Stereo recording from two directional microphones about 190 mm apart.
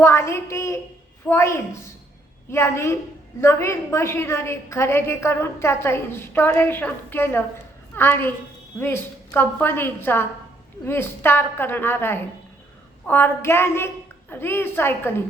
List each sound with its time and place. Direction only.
0.0 s a woman's voice: 15° left (ahead or behind)